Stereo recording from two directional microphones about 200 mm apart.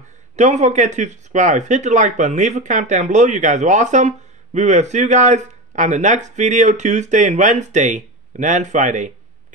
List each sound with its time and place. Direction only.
0.4 s speech: 35° right (ahead or behind)